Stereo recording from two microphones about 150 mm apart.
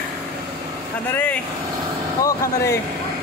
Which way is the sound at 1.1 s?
10° left (ahead or behind).